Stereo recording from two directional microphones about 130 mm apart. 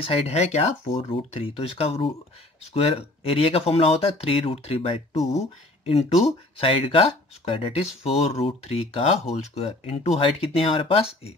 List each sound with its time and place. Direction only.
0.0 s speech: 50° left (ahead or behind)